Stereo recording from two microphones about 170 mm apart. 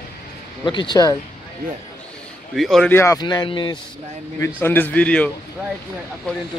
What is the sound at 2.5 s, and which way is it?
Speech, centre (ahead or behind).